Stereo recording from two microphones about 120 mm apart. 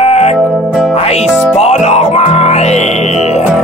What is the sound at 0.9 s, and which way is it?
Music, 60° left (ahead or behind).